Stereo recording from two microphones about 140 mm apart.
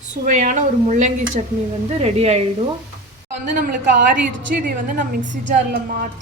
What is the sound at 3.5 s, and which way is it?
Speech, 90° right.